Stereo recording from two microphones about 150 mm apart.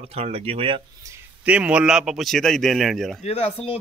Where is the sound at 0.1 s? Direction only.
40° right (ahead or behind).